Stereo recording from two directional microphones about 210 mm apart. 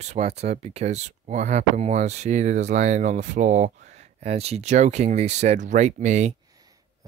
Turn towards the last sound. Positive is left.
turn(degrees=-35)  # may be behind; listen again after turning